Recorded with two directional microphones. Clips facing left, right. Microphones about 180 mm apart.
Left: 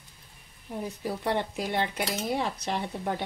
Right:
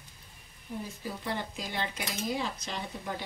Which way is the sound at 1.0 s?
65° left (ahead or behind).